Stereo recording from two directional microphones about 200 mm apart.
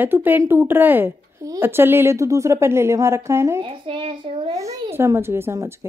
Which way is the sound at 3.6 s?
25° right (ahead or behind).